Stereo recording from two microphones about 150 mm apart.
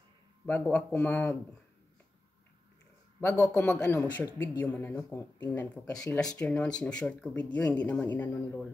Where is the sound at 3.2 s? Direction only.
15° left (ahead or behind).